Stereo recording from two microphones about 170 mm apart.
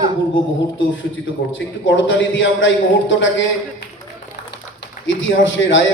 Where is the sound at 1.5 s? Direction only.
90° left.